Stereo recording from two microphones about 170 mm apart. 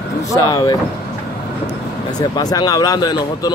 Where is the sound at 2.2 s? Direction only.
25° left (ahead or behind).